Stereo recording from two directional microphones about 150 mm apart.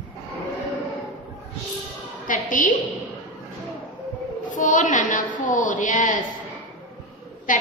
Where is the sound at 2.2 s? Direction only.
65° left (ahead or behind).